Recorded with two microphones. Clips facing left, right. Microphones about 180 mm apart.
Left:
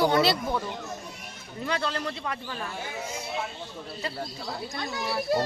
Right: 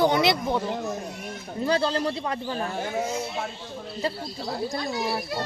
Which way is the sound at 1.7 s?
35° right (ahead or behind).